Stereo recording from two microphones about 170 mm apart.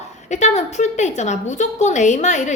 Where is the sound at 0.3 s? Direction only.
40° left (ahead or behind).